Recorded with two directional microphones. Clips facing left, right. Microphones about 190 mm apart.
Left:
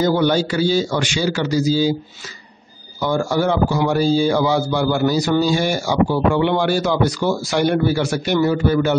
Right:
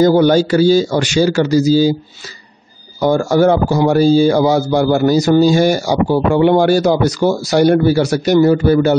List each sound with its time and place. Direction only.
0.0 s speech: 40° right (ahead or behind)
3.0 s speech: 45° right (ahead or behind)